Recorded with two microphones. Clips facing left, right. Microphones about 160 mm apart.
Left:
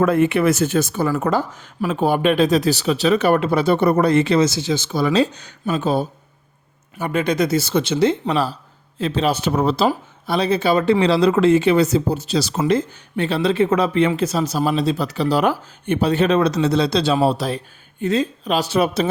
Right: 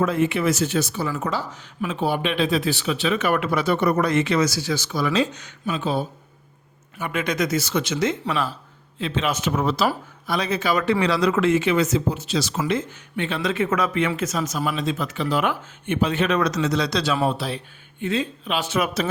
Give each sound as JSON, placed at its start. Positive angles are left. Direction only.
{"t": 0.0, "sound": "speech", "side_deg": 55}